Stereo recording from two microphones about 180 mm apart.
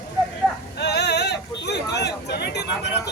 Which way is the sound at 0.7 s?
70° left (ahead or behind).